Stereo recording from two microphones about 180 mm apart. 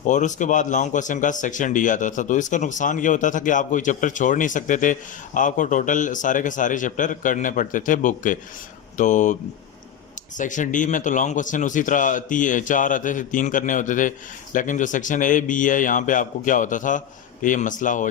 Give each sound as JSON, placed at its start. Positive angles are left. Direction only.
{"t": 0.0, "sound": "a man's voice", "side_deg": 45}